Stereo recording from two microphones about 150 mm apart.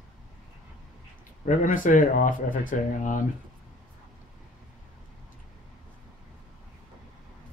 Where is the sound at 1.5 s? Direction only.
60° left (ahead or behind).